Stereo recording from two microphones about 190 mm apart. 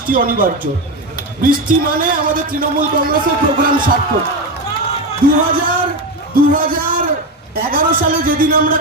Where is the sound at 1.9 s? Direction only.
45° right (ahead or behind).